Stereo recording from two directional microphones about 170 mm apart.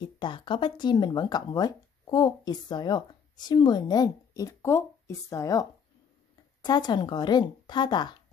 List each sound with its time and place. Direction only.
0.0 s speech: 30° left (ahead or behind)